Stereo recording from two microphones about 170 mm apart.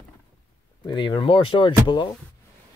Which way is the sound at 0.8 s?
25° left (ahead or behind).